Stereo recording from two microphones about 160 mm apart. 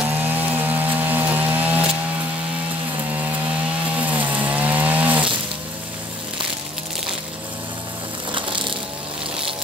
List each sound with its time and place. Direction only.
0.2 s chainsaw: 10° right (ahead or behind)
4.0 s chainsaw: 10° right (ahead or behind)
8.3 s crushing: 30° right (ahead or behind)